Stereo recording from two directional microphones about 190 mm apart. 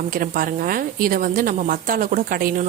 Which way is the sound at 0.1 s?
50° right (ahead or behind).